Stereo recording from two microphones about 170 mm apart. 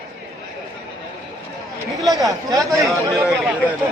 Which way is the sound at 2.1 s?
20° right (ahead or behind).